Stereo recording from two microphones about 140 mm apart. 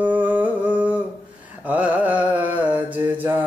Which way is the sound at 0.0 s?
10° right (ahead or behind).